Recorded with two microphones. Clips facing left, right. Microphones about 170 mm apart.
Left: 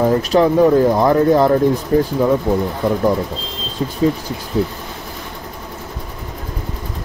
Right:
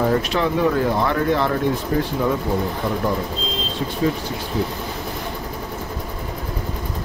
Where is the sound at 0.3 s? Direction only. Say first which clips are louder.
Left 8 dB; 30° left (ahead or behind).